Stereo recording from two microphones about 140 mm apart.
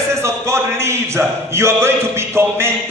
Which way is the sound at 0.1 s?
20° right (ahead or behind).